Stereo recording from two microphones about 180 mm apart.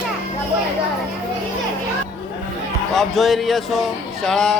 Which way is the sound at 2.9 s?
Centre (ahead or behind).